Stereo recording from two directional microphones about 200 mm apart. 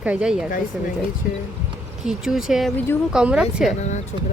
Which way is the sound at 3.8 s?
35° left (ahead or behind).